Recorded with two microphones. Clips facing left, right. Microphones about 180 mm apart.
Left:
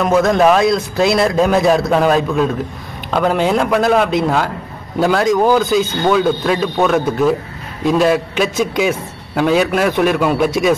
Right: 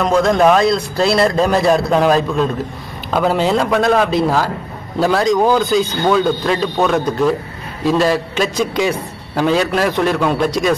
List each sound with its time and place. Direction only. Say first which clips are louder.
0.0 s a man's voice: left 1 dB; centre (ahead or behind)